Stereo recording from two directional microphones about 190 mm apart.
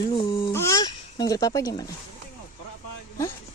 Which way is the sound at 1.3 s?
20° left (ahead or behind).